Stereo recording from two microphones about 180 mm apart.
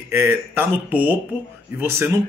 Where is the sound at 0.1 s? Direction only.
10° right (ahead or behind).